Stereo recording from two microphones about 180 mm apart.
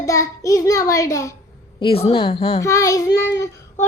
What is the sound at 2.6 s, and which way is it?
Speech, 15° left (ahead or behind).